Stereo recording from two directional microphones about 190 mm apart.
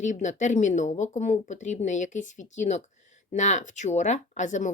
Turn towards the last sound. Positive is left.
turn(degrees=40)  # may be behind; listen again after turning